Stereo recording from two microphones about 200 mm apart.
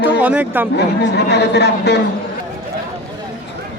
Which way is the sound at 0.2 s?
10° right (ahead or behind).